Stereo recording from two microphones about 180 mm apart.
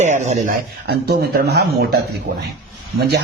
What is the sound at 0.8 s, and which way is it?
Speech, 65° right (ahead or behind).